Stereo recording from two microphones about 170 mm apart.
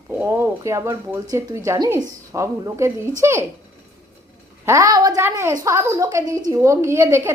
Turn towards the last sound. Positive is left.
turn(degrees=-15)  # may be behind; listen again after turning